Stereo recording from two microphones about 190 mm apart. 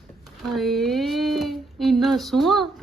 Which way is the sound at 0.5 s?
Centre (ahead or behind).